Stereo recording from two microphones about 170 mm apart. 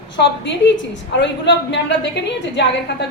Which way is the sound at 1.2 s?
90° left.